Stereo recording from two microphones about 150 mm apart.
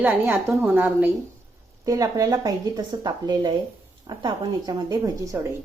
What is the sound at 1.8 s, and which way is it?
A woman's voice, 20° right (ahead or behind).